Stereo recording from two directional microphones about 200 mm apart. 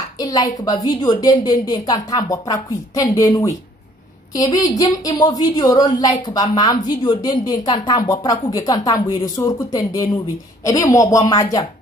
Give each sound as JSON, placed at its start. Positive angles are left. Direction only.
{"t": 0.2, "sound": "a woman's voice", "side_deg": 20}